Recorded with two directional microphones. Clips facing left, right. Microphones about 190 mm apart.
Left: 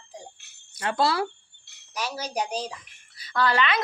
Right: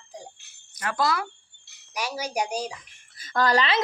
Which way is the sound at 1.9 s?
10° right (ahead or behind).